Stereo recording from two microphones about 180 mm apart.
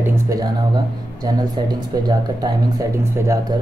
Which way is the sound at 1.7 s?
25° right (ahead or behind).